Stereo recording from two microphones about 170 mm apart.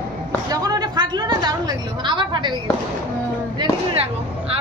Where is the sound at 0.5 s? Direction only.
25° right (ahead or behind).